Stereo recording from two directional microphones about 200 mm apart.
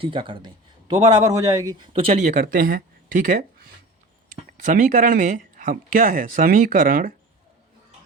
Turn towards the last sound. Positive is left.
turn(degrees=-45)  # may be behind; listen again after turning